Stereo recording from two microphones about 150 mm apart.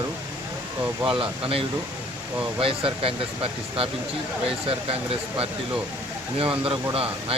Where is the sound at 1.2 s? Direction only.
40° right (ahead or behind).